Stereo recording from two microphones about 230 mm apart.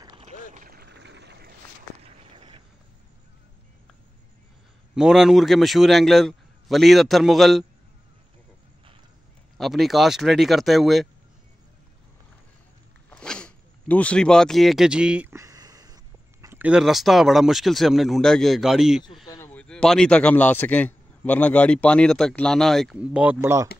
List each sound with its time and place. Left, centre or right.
0.2 s boat: right
2.0 s a sound: right
4.9 s a man's voice: centre
9.6 s a man's voice: centre
13.1 s speech: centre
19.2 s a man's voice: centre